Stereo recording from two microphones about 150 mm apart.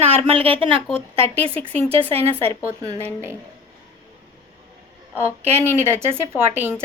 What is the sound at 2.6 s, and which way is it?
Speech, 20° right (ahead or behind).